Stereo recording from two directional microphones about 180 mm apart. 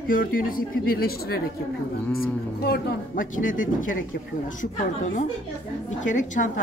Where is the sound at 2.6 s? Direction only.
60° left (ahead or behind).